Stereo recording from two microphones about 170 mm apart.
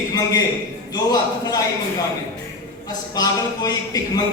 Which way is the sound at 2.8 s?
25° left (ahead or behind).